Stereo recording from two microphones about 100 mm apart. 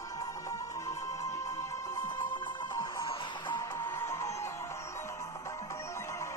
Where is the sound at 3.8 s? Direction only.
30° left (ahead or behind).